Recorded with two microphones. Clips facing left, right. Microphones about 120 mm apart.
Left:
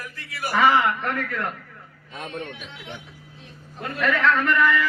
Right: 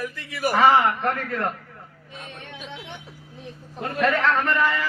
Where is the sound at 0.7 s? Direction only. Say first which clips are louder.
Right 2 dB; 30° right (ahead or behind).